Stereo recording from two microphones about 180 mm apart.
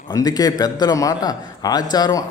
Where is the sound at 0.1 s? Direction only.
20° left (ahead or behind).